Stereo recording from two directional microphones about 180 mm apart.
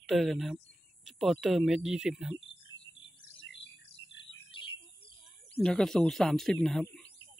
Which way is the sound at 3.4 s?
85° left.